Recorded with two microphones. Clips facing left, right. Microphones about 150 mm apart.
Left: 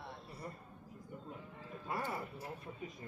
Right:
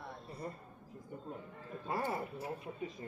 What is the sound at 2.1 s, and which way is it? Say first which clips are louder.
Speech: right 4 dB; 25° right (ahead or behind).